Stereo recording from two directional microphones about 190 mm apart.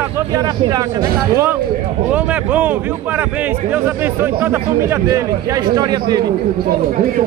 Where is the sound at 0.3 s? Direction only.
20° right (ahead or behind).